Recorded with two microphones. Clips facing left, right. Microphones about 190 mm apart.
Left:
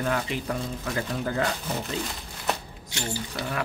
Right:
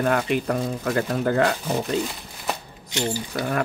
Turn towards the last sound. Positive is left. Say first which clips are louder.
# right 6 dB
turn(degrees=-50)  # may be behind; listen again after turning